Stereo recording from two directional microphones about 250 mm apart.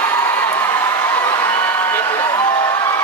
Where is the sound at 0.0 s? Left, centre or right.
Centre.